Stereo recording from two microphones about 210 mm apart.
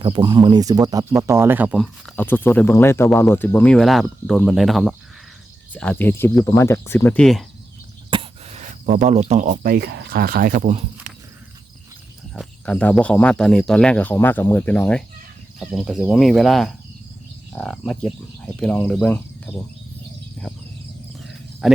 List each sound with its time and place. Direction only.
0.0 s speech: 20° right (ahead or behind); by 7.4 s centre (ahead or behind)
8.1 s speech: 30° right (ahead or behind)
12.3 s speech: 5° left (ahead or behind)
21.6 s speech: 5° right (ahead or behind)